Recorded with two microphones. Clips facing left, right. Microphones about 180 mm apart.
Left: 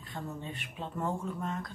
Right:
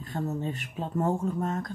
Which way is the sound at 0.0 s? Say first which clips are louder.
Right 9 dB; 45° right (ahead or behind).